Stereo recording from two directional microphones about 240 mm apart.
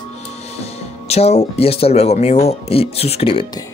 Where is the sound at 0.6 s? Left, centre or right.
Left.